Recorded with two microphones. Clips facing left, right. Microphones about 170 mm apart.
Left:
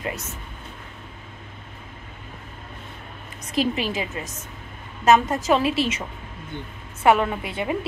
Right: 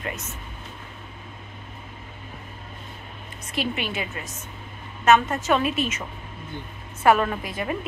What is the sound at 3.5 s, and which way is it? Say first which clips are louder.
Speech: left 4 dB; 35° left (ahead or behind).